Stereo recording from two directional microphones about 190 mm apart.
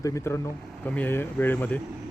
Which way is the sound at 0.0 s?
15° left (ahead or behind).